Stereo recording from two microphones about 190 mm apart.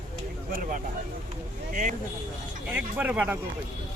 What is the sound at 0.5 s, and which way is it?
Speech, 45° right (ahead or behind).